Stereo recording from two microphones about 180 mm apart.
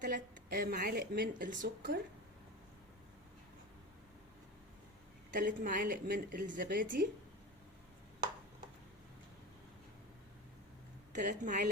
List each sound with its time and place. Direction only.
0.1 s speech: 55° right (ahead or behind)
5.3 s speech: 50° right (ahead or behind)
11.1 s speech: 45° right (ahead or behind)